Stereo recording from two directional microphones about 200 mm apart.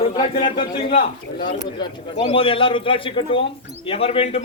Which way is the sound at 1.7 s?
25° left (ahead or behind).